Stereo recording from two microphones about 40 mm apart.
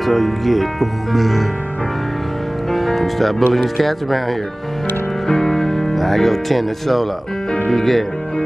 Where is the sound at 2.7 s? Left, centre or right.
Centre.